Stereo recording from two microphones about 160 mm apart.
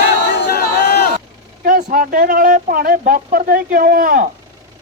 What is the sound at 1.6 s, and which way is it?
Speech, 60° right (ahead or behind).